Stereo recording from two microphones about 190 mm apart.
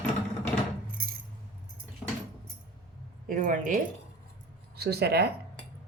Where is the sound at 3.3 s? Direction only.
45° right (ahead or behind).